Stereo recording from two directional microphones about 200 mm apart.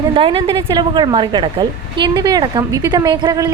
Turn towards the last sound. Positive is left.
turn(degrees=-20)  # may be behind; listen again after turning